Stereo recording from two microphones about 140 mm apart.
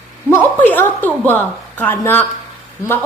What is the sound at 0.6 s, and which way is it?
A woman's voice, 15° left (ahead or behind).